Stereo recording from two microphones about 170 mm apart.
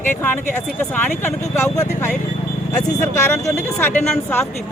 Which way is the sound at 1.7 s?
20° left (ahead or behind).